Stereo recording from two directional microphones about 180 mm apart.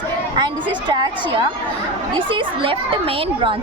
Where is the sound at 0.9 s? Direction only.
25° right (ahead or behind).